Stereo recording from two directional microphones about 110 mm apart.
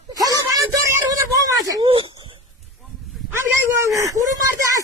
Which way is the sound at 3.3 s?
25° right (ahead or behind).